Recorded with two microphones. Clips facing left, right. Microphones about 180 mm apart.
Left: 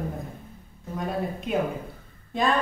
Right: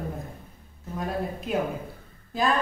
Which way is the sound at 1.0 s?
Centre (ahead or behind).